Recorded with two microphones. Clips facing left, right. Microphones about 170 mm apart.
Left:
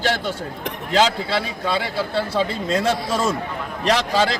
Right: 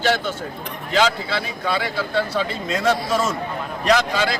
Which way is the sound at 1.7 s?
30° left (ahead or behind).